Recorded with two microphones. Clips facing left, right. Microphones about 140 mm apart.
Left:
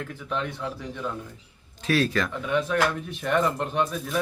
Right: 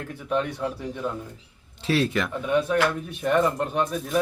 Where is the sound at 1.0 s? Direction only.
10° right (ahead or behind).